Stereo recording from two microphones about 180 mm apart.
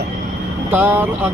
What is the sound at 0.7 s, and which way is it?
Speech, 10° right (ahead or behind).